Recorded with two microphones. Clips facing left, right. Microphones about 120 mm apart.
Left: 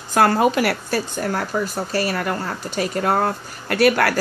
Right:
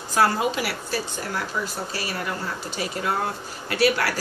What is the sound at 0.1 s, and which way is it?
A woman's voice, 60° left (ahead or behind).